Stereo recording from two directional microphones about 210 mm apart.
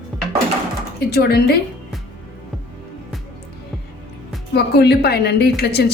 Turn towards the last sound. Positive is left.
turn(degrees=50)  # may be behind; listen again after turning